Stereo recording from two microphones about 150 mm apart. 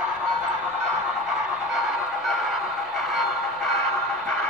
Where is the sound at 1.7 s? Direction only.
5° right (ahead or behind).